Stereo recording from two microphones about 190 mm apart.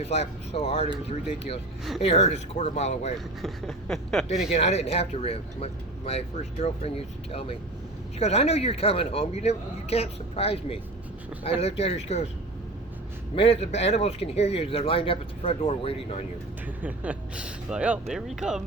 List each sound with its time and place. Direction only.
0.0 s speech: 35° left (ahead or behind)
2.0 s speech: 35° left (ahead or behind)
3.4 s a sound: centre (ahead or behind)
4.5 s speech: 35° left (ahead or behind)
13.3 s speech: 30° left (ahead or behind)
16.8 s speech: 5° right (ahead or behind)
18.1 s a sound: centre (ahead or behind)